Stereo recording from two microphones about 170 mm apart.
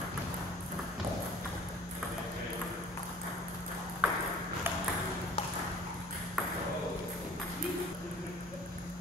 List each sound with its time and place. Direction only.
4.0 s ping: 5° right (ahead or behind)